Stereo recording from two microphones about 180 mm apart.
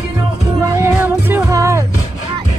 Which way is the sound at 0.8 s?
15° right (ahead or behind).